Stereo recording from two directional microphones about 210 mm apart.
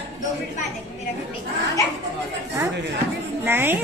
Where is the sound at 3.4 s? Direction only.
10° right (ahead or behind).